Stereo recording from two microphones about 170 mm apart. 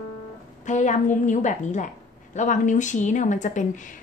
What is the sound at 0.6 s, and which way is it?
A woman's voice, 45° left (ahead or behind).